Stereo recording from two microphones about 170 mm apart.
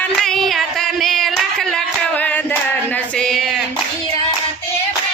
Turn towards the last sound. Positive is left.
turn(degrees=0)  # may be behind; listen again after turning